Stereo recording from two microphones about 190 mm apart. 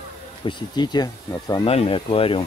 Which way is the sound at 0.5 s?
25° left (ahead or behind).